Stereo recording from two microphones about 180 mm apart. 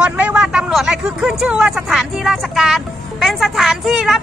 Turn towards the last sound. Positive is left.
turn(degrees=0)  # may be behind; listen again after turning